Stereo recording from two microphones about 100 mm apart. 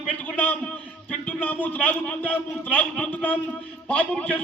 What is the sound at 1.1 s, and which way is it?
A man's voice, 15° left (ahead or behind).